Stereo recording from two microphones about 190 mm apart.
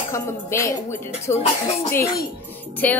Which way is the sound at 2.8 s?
10° left (ahead or behind).